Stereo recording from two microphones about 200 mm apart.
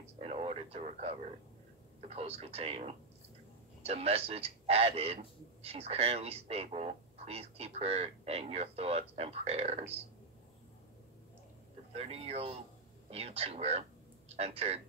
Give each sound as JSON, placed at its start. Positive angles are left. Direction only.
{"t": 0.0, "sound": "a sound", "side_deg": -30}
{"t": 2.0, "sound": "a man's voice", "side_deg": -30}
{"t": 11.9, "sound": "a man's voice", "side_deg": -30}